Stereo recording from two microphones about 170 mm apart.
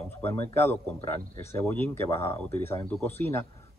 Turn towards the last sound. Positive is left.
turn(degrees=15)  # may be behind; listen again after turning